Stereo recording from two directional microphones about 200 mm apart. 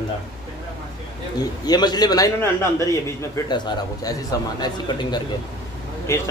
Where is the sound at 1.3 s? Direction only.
20° left (ahead or behind).